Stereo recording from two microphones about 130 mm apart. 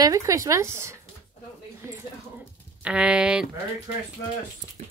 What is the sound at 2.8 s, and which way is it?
Speech, 10° right (ahead or behind).